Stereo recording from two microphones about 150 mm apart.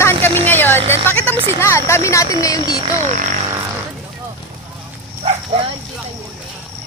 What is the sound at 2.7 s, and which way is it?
Speech, 40° right (ahead or behind).